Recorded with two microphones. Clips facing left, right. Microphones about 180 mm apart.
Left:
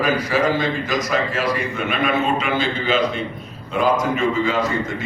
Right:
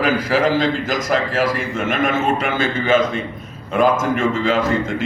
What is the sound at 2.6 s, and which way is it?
A man's voice, 50° right (ahead or behind).